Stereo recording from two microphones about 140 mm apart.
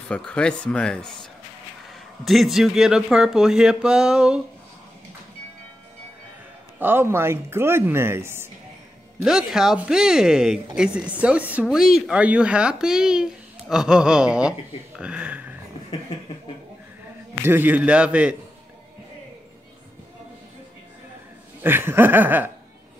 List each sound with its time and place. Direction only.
0.1 s speech: 5° left (ahead or behind)
2.2 s speech: centre (ahead or behind)
6.8 s speech: 15° right (ahead or behind)
9.2 s speech: 5° right (ahead or behind)
17.4 s speech: 15° right (ahead or behind)
21.6 s speech: 15° right (ahead or behind)